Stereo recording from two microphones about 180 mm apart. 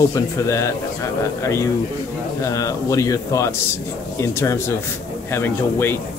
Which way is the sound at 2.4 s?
20° left (ahead or behind).